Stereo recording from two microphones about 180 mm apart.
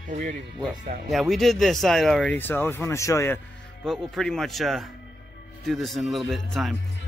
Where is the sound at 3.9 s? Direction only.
Centre (ahead or behind).